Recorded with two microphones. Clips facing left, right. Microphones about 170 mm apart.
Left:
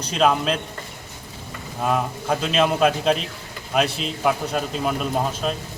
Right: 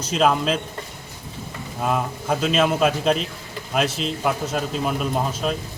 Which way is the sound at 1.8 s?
Centre (ahead or behind).